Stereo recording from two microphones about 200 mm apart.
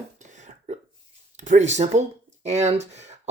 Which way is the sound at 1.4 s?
35° right (ahead or behind).